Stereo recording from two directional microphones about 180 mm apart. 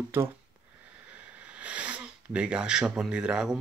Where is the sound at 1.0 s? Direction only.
10° right (ahead or behind).